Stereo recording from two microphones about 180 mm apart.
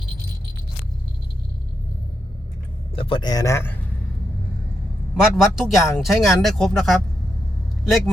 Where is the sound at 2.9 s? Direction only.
30° left (ahead or behind); by 3.8 s 15° left (ahead or behind).